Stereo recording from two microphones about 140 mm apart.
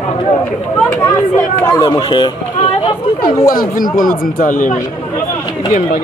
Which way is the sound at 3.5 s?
85° left.